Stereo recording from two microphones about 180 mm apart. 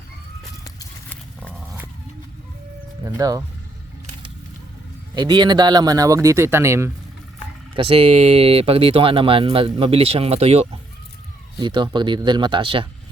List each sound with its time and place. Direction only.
1.1 s dog: 5° left (ahead or behind)
3.0 s speech: 20° right (ahead or behind)
5.1 s speech: 25° right (ahead or behind)
7.8 s speech: 30° right (ahead or behind)